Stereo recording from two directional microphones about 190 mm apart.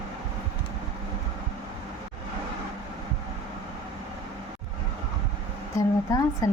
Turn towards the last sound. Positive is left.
turn(degrees=15)  # may be behind; listen again after turning